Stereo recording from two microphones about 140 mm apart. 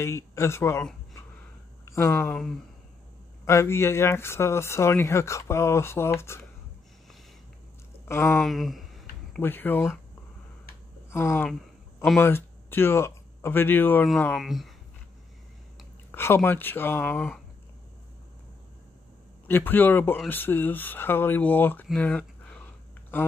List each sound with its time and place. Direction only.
0.0 s speech: 20° left (ahead or behind)
1.9 s speech: 20° left (ahead or behind)
2.2 s speech: 5° left (ahead or behind)
3.4 s speech: 20° left (ahead or behind)
8.0 s speech: 15° left (ahead or behind)
8.4 s speech: centre (ahead or behind)
9.4 s speech: 15° left (ahead or behind)
11.1 s speech: 15° left (ahead or behind); by 14.7 s centre (ahead or behind)
16.1 s speech: 15° left (ahead or behind)
19.4 s speech: 15° left (ahead or behind)
21.9 s a sound: 10° left (ahead or behind)